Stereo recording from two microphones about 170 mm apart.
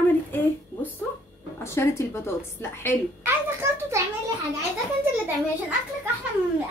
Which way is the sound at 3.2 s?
15° right (ahead or behind).